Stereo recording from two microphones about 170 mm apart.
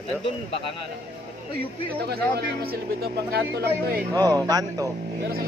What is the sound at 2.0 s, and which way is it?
Speech, 75° right (ahead or behind).